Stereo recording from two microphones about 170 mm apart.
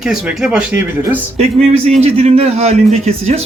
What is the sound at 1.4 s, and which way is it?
A man's voice, 40° right (ahead or behind).